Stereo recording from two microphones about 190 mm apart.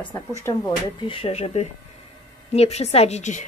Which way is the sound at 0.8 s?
30° left (ahead or behind).